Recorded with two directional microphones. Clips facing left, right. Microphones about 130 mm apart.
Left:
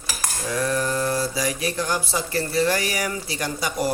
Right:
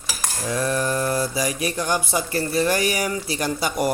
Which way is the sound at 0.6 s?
20° right (ahead or behind).